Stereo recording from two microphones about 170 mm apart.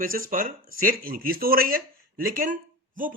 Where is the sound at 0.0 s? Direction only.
55° right (ahead or behind).